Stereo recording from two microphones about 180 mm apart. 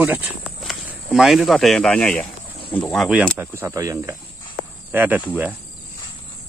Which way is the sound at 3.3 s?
15° right (ahead or behind).